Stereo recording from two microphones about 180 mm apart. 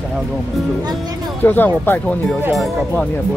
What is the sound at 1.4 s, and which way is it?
Speech, 10° left (ahead or behind).